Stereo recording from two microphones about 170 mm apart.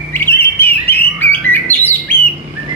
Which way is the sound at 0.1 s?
15° left (ahead or behind).